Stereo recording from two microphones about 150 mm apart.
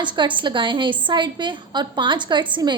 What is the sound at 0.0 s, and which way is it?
A woman's voice, 30° right (ahead or behind).